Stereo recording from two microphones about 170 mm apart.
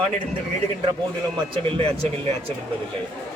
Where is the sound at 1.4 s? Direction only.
30° right (ahead or behind).